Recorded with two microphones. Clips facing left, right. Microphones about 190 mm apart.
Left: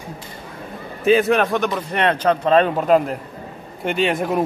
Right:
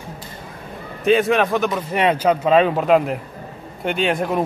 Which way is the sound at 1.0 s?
Centre (ahead or behind).